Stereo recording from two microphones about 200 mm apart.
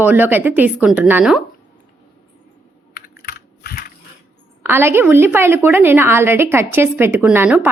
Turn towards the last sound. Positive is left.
turn(degrees=-10)  # may be behind; listen again after turning